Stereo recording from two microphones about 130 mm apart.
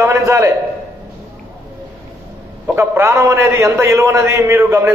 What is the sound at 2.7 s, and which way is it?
A man's voice, 20° right (ahead or behind).